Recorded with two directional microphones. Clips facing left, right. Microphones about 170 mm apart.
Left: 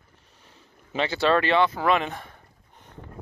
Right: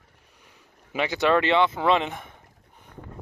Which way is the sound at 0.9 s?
15° right (ahead or behind).